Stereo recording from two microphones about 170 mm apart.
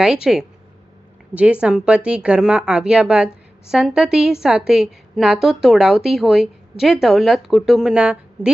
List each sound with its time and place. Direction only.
0.0 s a woman's voice: 5° right (ahead or behind)